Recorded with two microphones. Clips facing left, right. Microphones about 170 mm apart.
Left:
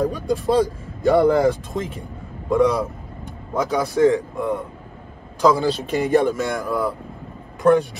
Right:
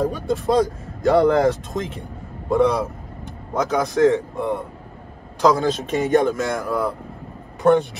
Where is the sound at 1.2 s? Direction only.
10° left (ahead or behind).